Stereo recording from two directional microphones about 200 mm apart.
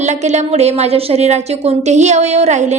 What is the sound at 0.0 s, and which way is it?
A woman's voice, 35° right (ahead or behind).